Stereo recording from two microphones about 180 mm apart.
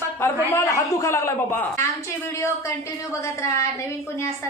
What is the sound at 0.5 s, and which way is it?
A woman's voice, 15° left (ahead or behind).